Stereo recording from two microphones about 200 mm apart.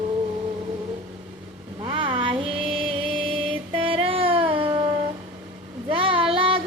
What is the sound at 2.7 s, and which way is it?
Music, 25° right (ahead or behind).